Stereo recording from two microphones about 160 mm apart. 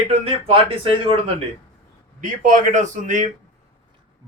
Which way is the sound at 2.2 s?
55° right (ahead or behind).